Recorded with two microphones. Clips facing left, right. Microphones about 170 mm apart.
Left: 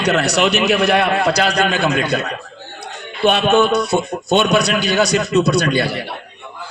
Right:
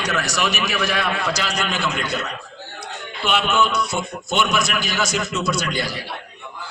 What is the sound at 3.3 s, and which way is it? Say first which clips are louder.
A man's voice: left 7 dB; 60° left (ahead or behind).